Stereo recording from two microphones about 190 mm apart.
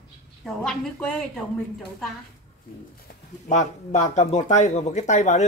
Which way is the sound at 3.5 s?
40° left (ahead or behind).